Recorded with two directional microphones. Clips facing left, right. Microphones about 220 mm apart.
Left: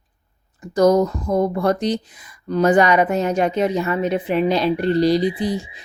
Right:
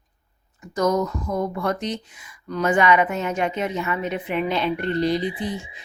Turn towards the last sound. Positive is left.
turn(degrees=35)  # may be behind; listen again after turning